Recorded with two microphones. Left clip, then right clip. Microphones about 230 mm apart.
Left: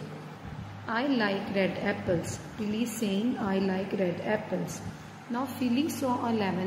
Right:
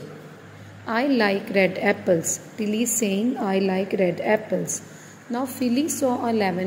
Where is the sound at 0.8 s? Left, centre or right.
Right.